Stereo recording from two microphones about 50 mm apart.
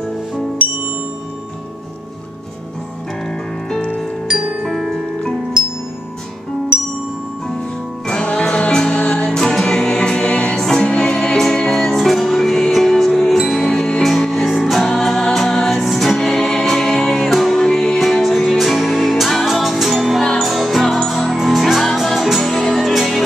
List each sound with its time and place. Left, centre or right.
4.6 s music: centre
8.1 s music: left; by 23.2 s centre